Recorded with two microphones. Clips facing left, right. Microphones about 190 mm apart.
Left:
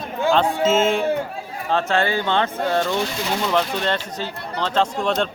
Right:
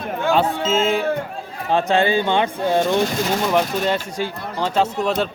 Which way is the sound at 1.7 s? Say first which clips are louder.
Right 3 dB; 15° right (ahead or behind).